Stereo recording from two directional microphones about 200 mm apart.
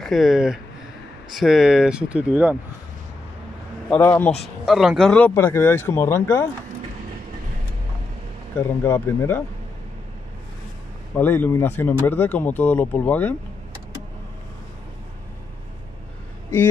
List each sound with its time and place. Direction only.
0.0 s speech: centre (ahead or behind)
3.9 s speech: 10° left (ahead or behind)
4.6 s speech: centre (ahead or behind)
8.5 s speech: 10° left (ahead or behind)
11.1 s speech: 10° left (ahead or behind)